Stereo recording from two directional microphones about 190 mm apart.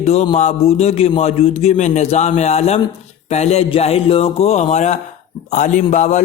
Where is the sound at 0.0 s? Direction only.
35° left (ahead or behind).